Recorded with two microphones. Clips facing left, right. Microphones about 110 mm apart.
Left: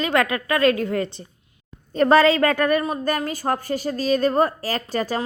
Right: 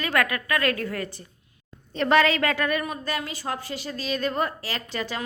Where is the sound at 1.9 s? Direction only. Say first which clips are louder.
Left 5 dB; 40° left (ahead or behind).